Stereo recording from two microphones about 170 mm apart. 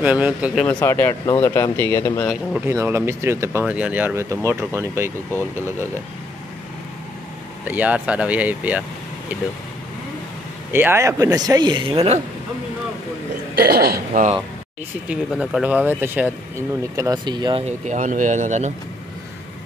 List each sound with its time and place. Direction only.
0.0 s speech: 10° right (ahead or behind)
0.7 s speech: 15° left (ahead or behind)
2.5 s speech: 15° right (ahead or behind)
7.6 s speech: 10° right (ahead or behind)
10.7 s speech: 15° right (ahead or behind); by 12.2 s 35° right (ahead or behind)
13.6 s a man's voice: 65° right (ahead or behind)
15.0 s speech: 5° right (ahead or behind); by 17.6 s 25° right (ahead or behind)
17.6 s speech: 45° right (ahead or behind)